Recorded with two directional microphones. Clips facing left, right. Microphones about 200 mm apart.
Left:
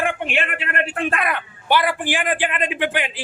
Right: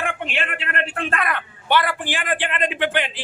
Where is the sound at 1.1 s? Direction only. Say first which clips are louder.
Left 1 dB; 10° left (ahead or behind).